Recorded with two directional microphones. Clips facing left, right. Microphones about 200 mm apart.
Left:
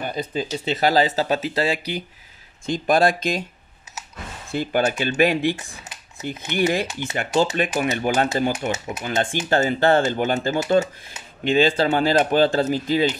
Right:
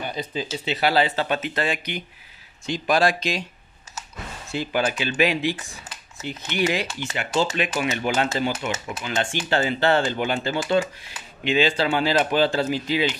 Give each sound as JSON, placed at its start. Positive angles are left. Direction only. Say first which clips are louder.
{"t": 0.0, "sound": "speech", "louder": "left 3 dB", "side_deg": 45}
{"t": 2.6, "sound": "speech", "louder": "left 3 dB", "side_deg": 50}
{"t": 4.5, "sound": "speech", "louder": "left 3 dB", "side_deg": 50}
{"t": 8.3, "sound": "speech", "louder": "left 3 dB", "side_deg": 60}
{"t": 8.6, "sound": "speech", "louder": "left 3 dB", "side_deg": 40}